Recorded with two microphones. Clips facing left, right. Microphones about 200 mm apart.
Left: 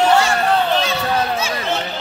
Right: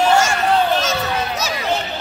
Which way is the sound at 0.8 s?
40° right (ahead or behind).